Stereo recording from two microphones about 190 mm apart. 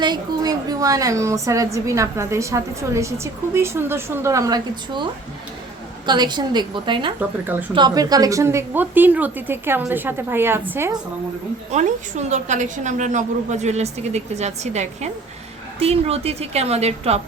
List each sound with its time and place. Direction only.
0.0 s a woman's voice: 20° right (ahead or behind)
6.1 s a woman's voice: 25° right (ahead or behind)
11.7 s a woman's voice: 40° right (ahead or behind)